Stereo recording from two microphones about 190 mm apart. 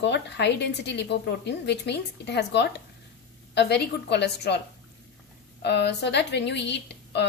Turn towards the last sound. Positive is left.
turn(degrees=65)  # may be behind; listen again after turning